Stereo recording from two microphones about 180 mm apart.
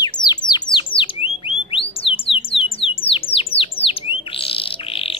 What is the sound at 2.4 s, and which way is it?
Bird, 30° left (ahead or behind).